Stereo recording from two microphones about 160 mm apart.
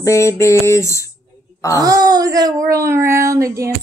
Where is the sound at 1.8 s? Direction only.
25° right (ahead or behind).